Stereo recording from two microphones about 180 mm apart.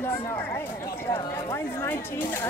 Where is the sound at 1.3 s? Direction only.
15° left (ahead or behind).